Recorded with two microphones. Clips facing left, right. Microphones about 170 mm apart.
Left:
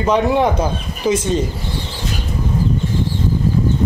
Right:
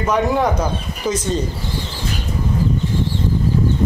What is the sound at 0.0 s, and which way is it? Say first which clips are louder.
Speech: left 2 dB; 25° left (ahead or behind).